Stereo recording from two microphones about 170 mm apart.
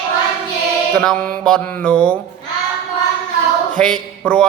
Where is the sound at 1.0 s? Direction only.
5° left (ahead or behind).